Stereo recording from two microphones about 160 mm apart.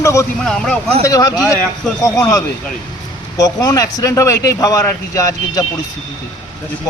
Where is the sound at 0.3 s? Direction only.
5° left (ahead or behind).